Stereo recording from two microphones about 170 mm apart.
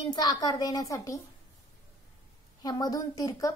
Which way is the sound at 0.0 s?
25° left (ahead or behind).